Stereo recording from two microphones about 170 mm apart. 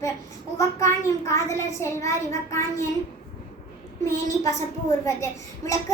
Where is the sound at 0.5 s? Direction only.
20° left (ahead or behind).